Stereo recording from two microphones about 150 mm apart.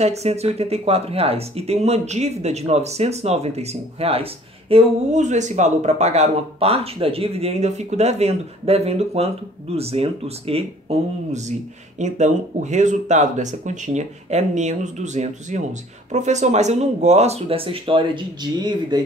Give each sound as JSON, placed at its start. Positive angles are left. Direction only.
{"t": 0.0, "sound": "speech", "side_deg": -45}